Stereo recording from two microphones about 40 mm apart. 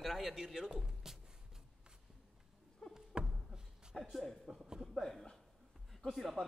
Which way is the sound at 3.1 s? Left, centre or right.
Centre.